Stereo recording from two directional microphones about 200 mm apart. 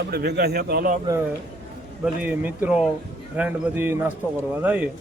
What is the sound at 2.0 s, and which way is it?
Speech, 10° right (ahead or behind).